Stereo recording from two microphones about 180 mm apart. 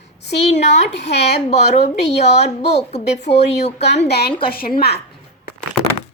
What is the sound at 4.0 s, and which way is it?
A woman's voice, 65° left (ahead or behind).